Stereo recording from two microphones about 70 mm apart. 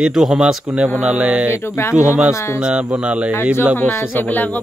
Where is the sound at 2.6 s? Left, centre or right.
Centre.